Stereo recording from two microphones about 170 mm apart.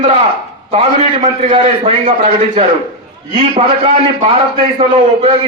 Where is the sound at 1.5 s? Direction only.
35° right (ahead or behind).